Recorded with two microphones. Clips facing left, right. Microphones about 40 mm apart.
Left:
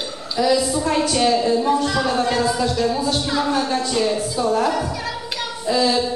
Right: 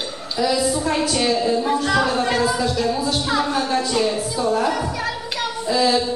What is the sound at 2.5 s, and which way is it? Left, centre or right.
Music, centre.